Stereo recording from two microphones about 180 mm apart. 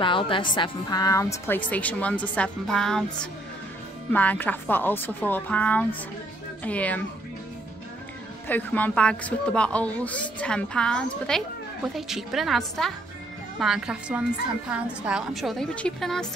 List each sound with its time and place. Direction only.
0.0 s a woman's voice: 30° left (ahead or behind); by 7.1 s 10° left (ahead or behind)
8.5 s a woman's voice: 10° left (ahead or behind)